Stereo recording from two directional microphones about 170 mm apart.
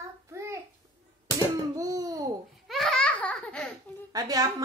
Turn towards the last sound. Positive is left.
turn(degrees=-20)  # may be behind; listen again after turning